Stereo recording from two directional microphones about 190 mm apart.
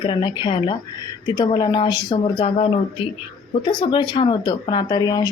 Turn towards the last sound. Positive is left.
turn(degrees=20)  # may be behind; listen again after turning